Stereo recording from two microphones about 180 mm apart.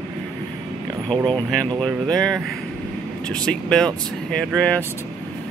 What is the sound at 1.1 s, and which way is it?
Speech, 25° right (ahead or behind).